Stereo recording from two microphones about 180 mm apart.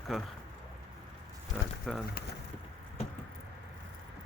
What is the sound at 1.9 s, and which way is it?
Speech, centre (ahead or behind).